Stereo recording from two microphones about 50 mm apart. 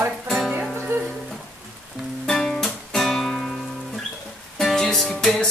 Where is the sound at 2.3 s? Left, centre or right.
Centre.